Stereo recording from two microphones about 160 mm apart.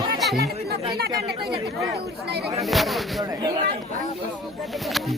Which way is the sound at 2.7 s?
Centre (ahead or behind).